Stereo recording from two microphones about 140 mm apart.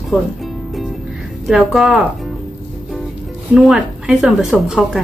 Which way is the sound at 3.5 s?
5° right (ahead or behind).